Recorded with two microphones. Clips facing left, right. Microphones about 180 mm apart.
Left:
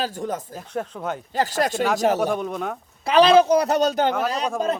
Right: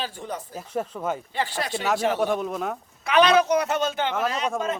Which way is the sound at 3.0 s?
30° left (ahead or behind).